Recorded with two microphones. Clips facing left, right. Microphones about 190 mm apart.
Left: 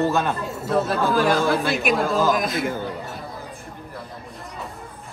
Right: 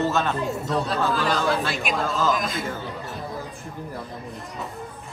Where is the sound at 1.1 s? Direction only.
50° left (ahead or behind).